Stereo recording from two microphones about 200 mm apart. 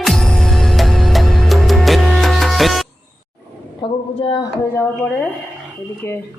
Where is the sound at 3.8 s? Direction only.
25° left (ahead or behind).